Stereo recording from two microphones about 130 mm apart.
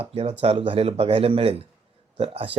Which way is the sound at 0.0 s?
50° right (ahead or behind).